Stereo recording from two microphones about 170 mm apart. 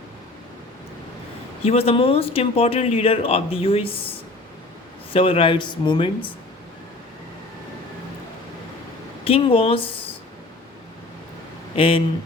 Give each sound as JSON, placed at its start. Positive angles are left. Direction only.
{"t": 1.6, "sound": "speech", "side_deg": 35}
{"t": 5.1, "sound": "a man's voice", "side_deg": 30}
{"t": 9.2, "sound": "speech", "side_deg": 35}
{"t": 11.8, "sound": "speech", "side_deg": 30}